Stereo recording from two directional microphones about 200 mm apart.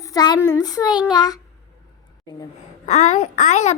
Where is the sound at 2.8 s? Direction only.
35° left (ahead or behind).